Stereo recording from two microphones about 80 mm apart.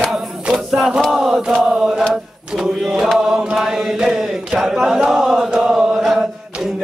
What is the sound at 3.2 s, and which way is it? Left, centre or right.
Chant, centre.